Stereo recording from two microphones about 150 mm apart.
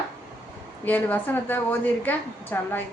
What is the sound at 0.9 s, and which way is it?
A woman's voice, 10° left (ahead or behind).